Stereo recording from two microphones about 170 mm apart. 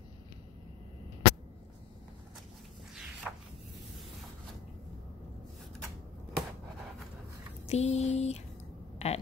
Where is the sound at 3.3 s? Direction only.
5° right (ahead or behind).